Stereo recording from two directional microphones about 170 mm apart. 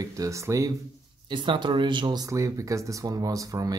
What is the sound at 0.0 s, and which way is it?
Speech, 20° right (ahead or behind).